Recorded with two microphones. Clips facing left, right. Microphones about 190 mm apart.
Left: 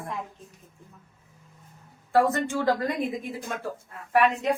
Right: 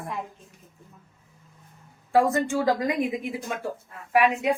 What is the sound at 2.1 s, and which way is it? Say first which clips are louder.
A woman's voice: right 1 dB; 10° right (ahead or behind).